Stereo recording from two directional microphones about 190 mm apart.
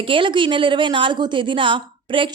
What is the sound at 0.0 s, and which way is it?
A woman's voice, 25° right (ahead or behind).